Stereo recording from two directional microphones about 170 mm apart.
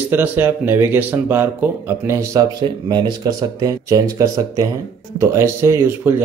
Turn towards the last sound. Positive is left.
turn(degrees=-15)  # may be behind; listen again after turning